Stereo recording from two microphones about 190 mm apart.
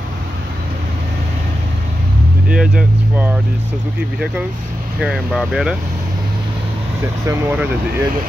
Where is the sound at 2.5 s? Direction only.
5° right (ahead or behind).